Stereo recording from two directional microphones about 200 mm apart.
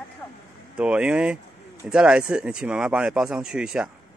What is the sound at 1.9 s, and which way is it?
Speech, 5° right (ahead or behind).